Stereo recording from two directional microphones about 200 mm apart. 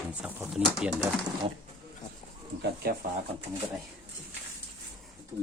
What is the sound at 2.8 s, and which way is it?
Speech, 50° right (ahead or behind).